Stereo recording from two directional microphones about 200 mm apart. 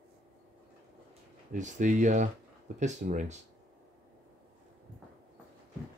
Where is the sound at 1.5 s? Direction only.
40° right (ahead or behind).